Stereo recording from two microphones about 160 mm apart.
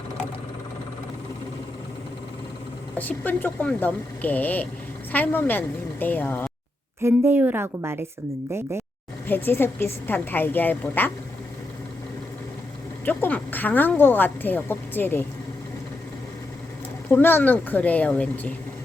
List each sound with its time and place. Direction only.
3.0 s a woman's voice: 10° left (ahead or behind)
7.0 s a woman's voice: 10° right (ahead or behind)
9.2 s a woman's voice: 10° left (ahead or behind)
13.1 s a woman's voice: 10° left (ahead or behind)
17.1 s a woman's voice: 15° left (ahead or behind)